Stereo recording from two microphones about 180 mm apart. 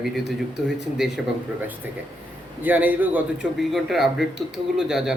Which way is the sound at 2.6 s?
10° right (ahead or behind).